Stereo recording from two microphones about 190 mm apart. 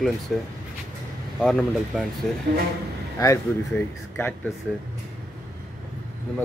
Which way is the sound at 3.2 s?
15° left (ahead or behind).